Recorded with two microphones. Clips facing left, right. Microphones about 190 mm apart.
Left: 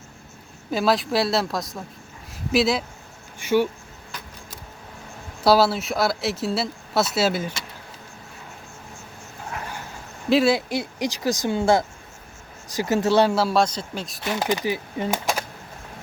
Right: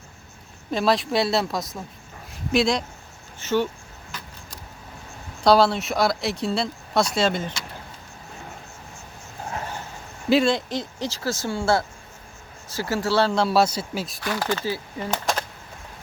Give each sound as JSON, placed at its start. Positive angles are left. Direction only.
{"t": 0.7, "sound": "speech", "side_deg": 0}
{"t": 5.4, "sound": "speech", "side_deg": 5}
{"t": 10.2, "sound": "speech", "side_deg": 5}
{"t": 13.3, "sound": "speech", "side_deg": 0}
{"t": 14.2, "sound": "speech", "side_deg": 20}